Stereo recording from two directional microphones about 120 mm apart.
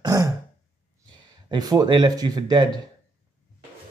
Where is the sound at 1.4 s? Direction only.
30° right (ahead or behind).